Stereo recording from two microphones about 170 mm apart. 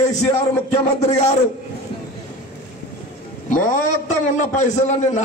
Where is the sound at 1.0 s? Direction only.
40° left (ahead or behind).